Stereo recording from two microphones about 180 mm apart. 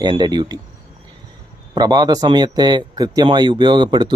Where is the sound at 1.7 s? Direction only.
20° right (ahead or behind).